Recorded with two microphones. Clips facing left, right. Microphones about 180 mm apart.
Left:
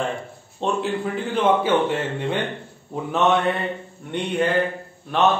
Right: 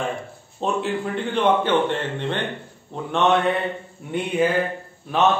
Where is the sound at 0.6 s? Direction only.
Centre (ahead or behind).